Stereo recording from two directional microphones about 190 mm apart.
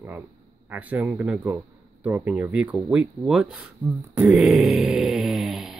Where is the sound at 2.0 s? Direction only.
10° right (ahead or behind).